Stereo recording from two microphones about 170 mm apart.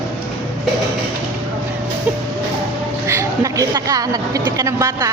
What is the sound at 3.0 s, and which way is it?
A woman's voice, 15° right (ahead or behind).